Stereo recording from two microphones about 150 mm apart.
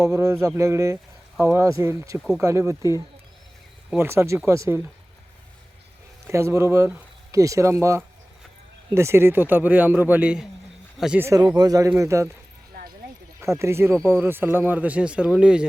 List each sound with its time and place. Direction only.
0.0 s speech: 20° right (ahead or behind)
3.9 s speech: 15° right (ahead or behind)
6.2 s speech: 20° right (ahead or behind)
11.3 s speech: 25° right (ahead or behind)
13.4 s speech: 20° right (ahead or behind)